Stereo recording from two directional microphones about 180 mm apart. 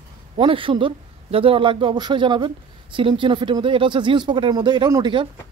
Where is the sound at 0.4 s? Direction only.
30° right (ahead or behind).